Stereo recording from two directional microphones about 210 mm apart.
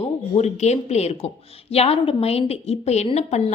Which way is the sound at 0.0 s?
30° left (ahead or behind).